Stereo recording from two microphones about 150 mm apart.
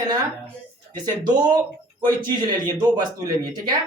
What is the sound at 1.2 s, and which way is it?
A woman's voice, 30° right (ahead or behind).